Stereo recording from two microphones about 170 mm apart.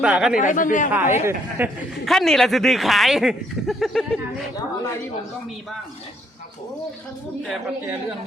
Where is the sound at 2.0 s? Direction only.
Centre (ahead or behind).